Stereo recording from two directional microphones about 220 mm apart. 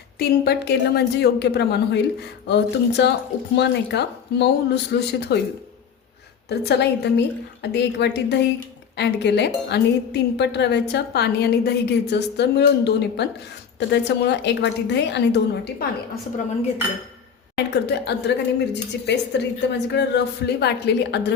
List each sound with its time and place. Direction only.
0.2 s speech: 45° left (ahead or behind)
6.5 s speech: 50° left (ahead or behind)
17.5 s speech: 50° left (ahead or behind)